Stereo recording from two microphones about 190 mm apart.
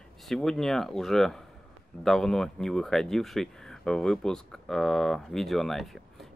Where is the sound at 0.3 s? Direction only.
Centre (ahead or behind).